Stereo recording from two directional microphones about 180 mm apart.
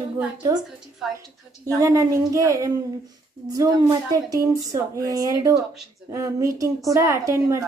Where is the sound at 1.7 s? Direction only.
20° right (ahead or behind).